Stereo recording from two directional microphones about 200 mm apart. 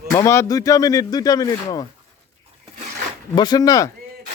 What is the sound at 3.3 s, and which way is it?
Speech, 20° left (ahead or behind).